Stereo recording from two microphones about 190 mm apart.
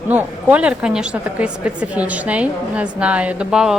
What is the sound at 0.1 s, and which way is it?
A woman's voice, 10° right (ahead or behind).